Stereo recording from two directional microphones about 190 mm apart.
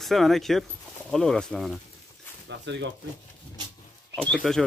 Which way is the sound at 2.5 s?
70° right (ahead or behind).